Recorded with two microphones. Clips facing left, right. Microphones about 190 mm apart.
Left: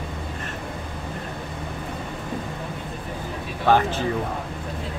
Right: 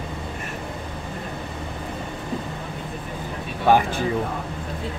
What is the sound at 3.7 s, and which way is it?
Speech, 10° right (ahead or behind).